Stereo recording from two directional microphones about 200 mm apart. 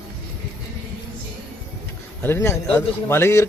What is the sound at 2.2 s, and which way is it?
A man's voice, 10° left (ahead or behind).